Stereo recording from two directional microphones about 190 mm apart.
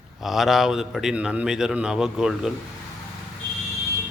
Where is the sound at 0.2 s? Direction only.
Centre (ahead or behind).